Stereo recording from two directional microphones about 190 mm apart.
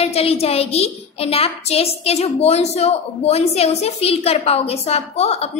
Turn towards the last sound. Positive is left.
turn(degrees=35)  # may be behind; listen again after turning